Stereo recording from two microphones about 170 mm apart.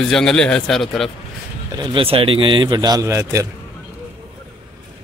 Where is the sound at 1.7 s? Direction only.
30° right (ahead or behind).